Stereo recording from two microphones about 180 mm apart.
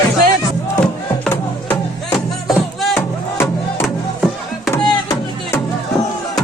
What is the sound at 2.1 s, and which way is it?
Music, centre (ahead or behind).